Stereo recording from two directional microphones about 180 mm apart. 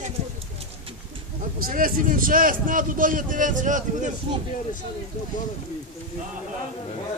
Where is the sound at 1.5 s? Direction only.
50° right (ahead or behind).